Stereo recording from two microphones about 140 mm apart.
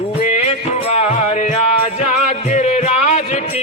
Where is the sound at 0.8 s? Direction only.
50° left (ahead or behind).